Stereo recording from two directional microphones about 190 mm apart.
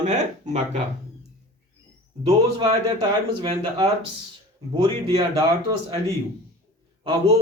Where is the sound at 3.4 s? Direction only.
25° right (ahead or behind).